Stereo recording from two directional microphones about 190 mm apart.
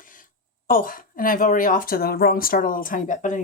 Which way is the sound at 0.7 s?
45° left (ahead or behind).